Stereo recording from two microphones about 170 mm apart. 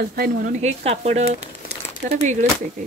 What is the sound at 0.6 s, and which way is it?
Speech, 40° right (ahead or behind).